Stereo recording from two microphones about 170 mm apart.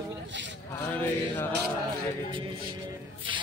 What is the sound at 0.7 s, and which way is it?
Mantra, 15° left (ahead or behind).